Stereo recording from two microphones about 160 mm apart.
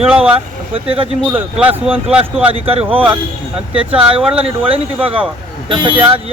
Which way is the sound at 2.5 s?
35° right (ahead or behind).